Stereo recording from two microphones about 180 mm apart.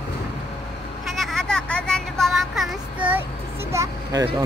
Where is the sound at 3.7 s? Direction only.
20° right (ahead or behind).